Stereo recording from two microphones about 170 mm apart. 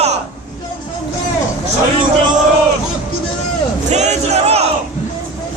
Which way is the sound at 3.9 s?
45° right (ahead or behind).